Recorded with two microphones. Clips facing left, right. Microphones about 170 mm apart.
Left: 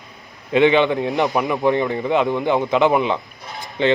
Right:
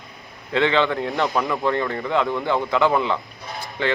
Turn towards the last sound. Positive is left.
turn(degrees=20)  # may be behind; listen again after turning